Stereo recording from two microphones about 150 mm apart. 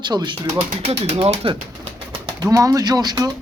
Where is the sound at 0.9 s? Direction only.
40° right (ahead or behind).